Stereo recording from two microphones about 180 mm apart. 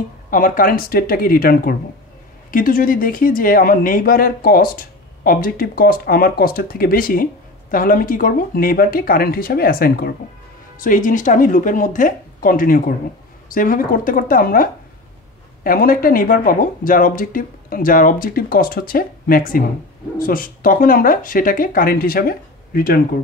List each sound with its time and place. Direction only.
0.3 s speech: 50° left (ahead or behind)